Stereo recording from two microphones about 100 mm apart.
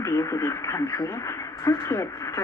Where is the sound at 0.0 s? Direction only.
30° left (ahead or behind).